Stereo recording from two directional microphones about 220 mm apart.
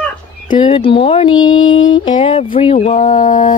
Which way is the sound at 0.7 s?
25° left (ahead or behind).